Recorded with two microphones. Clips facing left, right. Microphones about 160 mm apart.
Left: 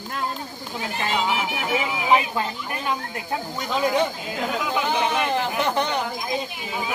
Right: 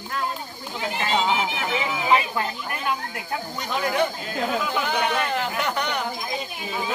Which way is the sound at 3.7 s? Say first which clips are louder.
Left 2 dB; 20° left (ahead or behind).